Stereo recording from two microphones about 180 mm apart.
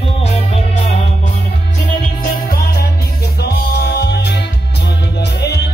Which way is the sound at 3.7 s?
65° left (ahead or behind).